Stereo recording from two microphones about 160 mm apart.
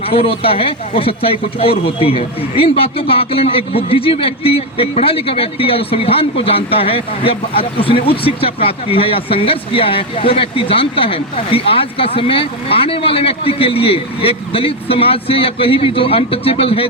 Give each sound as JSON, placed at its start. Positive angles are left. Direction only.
{"t": 0.0, "sound": "a man's voice", "side_deg": 40}